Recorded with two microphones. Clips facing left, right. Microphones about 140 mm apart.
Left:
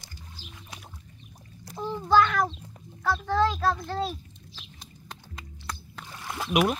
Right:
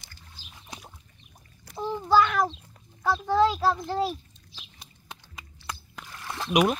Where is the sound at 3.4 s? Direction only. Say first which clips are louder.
Right 3 dB; 10° right (ahead or behind).